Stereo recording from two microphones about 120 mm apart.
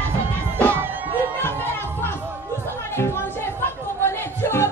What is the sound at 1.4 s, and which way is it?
Chatter, 20° left (ahead or behind).